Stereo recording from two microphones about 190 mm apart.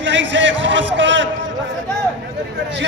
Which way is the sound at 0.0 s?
70° right (ahead or behind).